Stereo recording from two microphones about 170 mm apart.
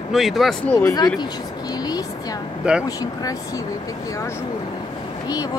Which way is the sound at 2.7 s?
5° right (ahead or behind).